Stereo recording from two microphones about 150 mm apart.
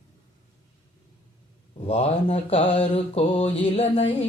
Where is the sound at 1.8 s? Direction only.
40° left (ahead or behind).